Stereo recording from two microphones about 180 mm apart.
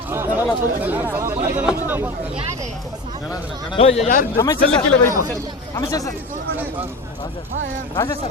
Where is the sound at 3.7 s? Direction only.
35° left (ahead or behind).